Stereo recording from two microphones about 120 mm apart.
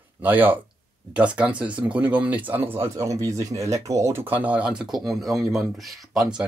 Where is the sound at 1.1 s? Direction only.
10° right (ahead or behind).